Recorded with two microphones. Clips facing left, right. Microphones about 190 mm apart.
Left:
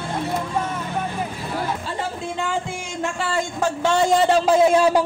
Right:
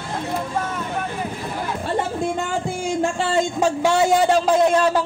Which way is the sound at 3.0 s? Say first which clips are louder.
Right 3 dB; 25° right (ahead or behind).